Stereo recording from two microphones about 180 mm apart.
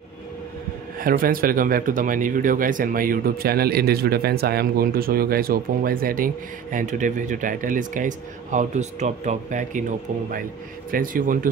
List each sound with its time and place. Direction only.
0.9 s speech: 50° right (ahead or behind)